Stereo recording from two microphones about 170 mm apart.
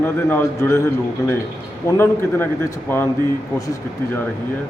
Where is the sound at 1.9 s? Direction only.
15° left (ahead or behind).